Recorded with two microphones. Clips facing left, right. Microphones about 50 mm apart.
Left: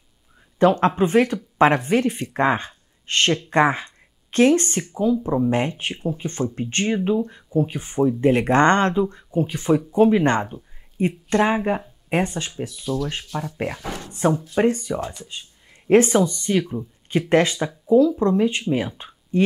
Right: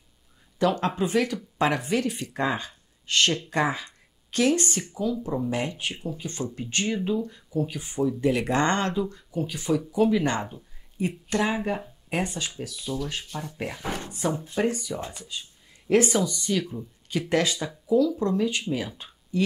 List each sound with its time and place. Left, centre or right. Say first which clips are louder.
0.6 s speech: left 7 dB; left
12.8 s speech: left 5 dB; centre
14.5 s speech: left 6 dB; left